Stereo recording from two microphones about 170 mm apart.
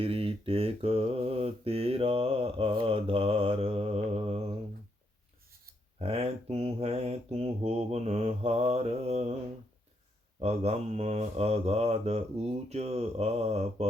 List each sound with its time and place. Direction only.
0.0 s mantra: 35° right (ahead or behind)
6.0 s mantra: 35° right (ahead or behind)
10.4 s mantra: 35° right (ahead or behind)